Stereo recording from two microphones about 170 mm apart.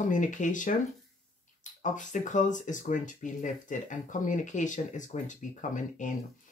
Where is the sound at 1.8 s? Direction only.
45° left (ahead or behind).